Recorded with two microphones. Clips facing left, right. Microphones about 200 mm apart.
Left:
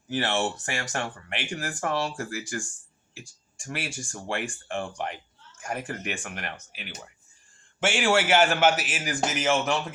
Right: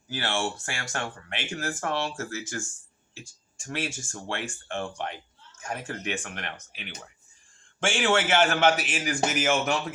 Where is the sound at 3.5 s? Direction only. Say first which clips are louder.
Right 2 dB; 15° left (ahead or behind).